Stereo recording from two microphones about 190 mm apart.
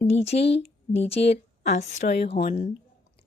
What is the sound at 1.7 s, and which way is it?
Speech, 40° left (ahead or behind).